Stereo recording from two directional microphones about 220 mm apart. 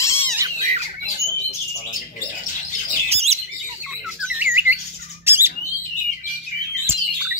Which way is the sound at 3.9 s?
5° right (ahead or behind).